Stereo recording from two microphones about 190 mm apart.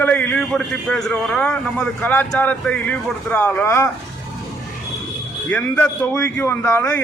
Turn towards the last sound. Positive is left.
turn(degrees=15)  # may be behind; listen again after turning